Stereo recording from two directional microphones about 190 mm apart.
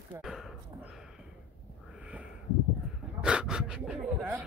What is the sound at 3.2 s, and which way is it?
Dog, 5° right (ahead or behind).